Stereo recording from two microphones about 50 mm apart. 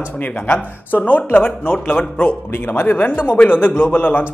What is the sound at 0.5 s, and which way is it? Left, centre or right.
Speech, left.